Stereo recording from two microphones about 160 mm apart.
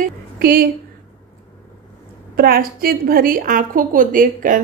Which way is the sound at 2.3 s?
70° right (ahead or behind).